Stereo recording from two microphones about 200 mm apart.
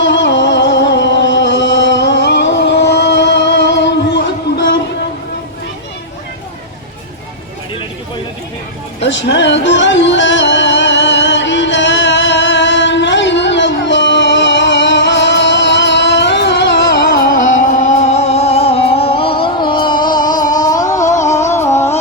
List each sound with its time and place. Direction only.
0.0 s music: 60° left (ahead or behind)
9.0 s music: 60° left (ahead or behind); by 21.9 s 15° left (ahead or behind)